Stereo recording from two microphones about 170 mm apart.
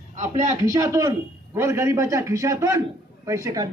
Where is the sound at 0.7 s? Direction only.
20° right (ahead or behind).